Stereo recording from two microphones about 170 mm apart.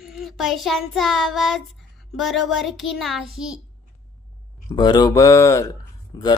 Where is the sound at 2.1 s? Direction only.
Centre (ahead or behind).